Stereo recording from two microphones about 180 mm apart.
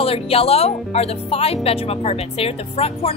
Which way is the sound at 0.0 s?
30° left (ahead or behind).